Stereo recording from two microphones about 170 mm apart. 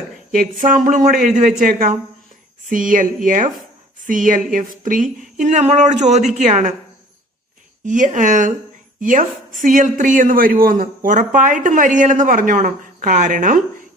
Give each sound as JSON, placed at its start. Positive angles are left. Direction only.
{"t": 0.3, "sound": "speech", "side_deg": -55}
{"t": 7.8, "sound": "speech", "side_deg": -50}